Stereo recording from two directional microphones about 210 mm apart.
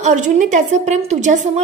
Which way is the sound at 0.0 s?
35° right (ahead or behind).